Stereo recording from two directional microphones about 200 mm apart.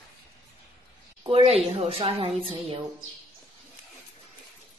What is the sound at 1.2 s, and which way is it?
A woman's voice, 30° right (ahead or behind).